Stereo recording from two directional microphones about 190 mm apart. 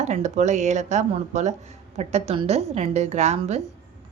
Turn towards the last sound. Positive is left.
turn(degrees=-35)  # may be behind; listen again after turning